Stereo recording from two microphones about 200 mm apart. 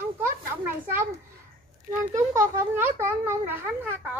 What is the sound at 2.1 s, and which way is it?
Speech, 15° right (ahead or behind).